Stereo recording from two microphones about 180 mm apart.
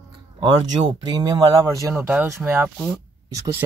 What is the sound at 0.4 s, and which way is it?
Speech, 25° right (ahead or behind).